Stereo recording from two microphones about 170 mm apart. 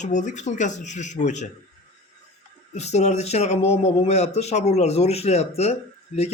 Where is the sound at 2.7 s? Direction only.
40° left (ahead or behind).